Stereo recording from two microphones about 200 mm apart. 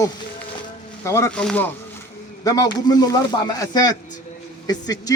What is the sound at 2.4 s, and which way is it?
A man's voice, 20° left (ahead or behind).